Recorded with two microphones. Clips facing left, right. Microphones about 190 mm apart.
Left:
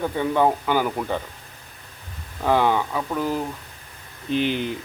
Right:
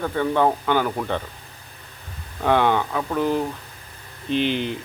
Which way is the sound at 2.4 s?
5° left (ahead or behind).